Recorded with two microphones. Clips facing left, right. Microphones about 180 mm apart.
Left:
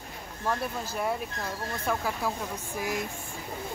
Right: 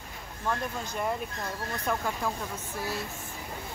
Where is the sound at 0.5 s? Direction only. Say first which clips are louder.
Left 1 dB; 5° left (ahead or behind).